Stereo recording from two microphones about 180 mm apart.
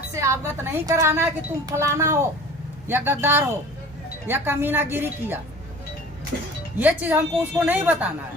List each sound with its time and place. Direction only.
0.1 s a woman's voice: 15° right (ahead or behind)
6.7 s a woman's voice: 10° right (ahead or behind)